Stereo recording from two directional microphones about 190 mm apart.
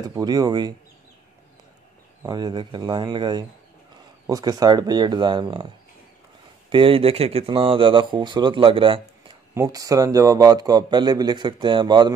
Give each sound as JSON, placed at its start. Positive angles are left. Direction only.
{"t": 0.0, "sound": "a man's voice", "side_deg": -20}
{"t": 2.2, "sound": "a man's voice", "side_deg": -20}
{"t": 6.7, "sound": "a man's voice", "side_deg": -25}